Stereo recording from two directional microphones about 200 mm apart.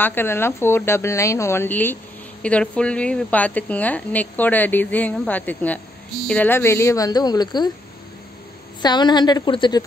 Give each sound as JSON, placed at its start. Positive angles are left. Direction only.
{"t": 0.0, "sound": "a woman's voice", "side_deg": 10}
{"t": 8.8, "sound": "a woman's voice", "side_deg": 20}